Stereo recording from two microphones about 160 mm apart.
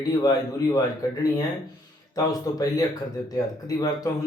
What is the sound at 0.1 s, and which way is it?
Speech, 25° left (ahead or behind).